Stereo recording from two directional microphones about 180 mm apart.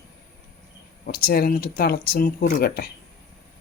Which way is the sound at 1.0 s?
55° left (ahead or behind).